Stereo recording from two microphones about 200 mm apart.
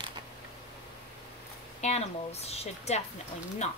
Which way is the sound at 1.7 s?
35° left (ahead or behind).